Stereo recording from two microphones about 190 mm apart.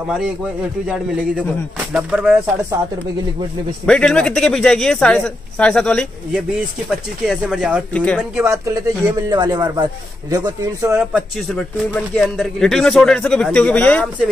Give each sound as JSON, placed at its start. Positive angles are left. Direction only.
{"t": 0.8, "sound": "a man's voice", "side_deg": -5}
{"t": 3.8, "sound": "a man's voice", "side_deg": 5}
{"t": 8.2, "sound": "a man's voice", "side_deg": -10}